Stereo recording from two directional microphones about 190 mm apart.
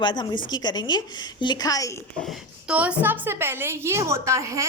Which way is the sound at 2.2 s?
Centre (ahead or behind).